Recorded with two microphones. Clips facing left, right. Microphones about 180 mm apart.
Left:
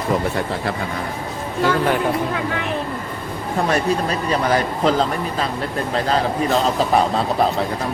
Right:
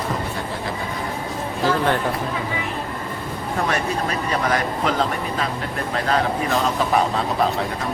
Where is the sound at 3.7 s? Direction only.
35° left (ahead or behind).